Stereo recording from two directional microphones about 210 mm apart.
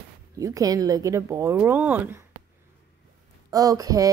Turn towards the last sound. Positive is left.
turn(degrees=-15)  # may be behind; listen again after turning